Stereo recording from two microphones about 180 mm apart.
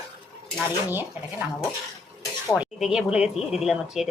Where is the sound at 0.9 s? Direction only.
10° right (ahead or behind).